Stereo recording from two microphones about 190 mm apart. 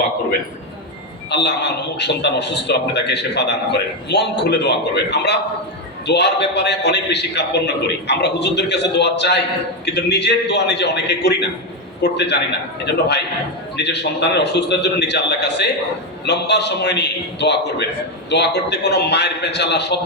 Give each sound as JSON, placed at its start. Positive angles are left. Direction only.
{"t": 1.3, "sound": "a man's voice", "side_deg": 60}